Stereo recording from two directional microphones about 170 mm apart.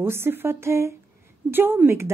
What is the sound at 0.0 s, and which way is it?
A woman's voice, 15° right (ahead or behind).